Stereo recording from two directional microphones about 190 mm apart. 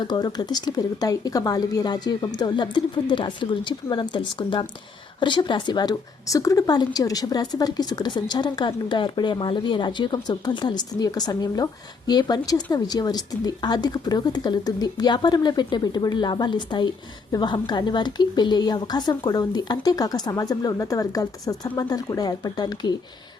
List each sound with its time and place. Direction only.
0.0 s a woman's voice: 20° left (ahead or behind)